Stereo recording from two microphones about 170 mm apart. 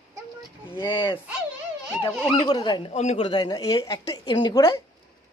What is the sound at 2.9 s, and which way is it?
Speech, 40° left (ahead or behind).